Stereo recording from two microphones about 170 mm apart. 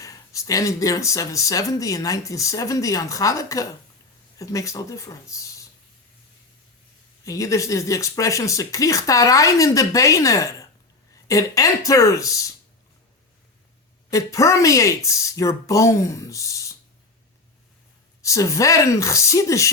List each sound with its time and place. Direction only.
0.0 s speech: 20° left (ahead or behind)
7.3 s speech: 20° left (ahead or behind)
14.1 s speech: 20° left (ahead or behind)
18.2 s speech: 20° left (ahead or behind)